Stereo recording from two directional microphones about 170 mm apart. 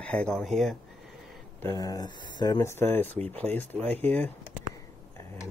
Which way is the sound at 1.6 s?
20° left (ahead or behind).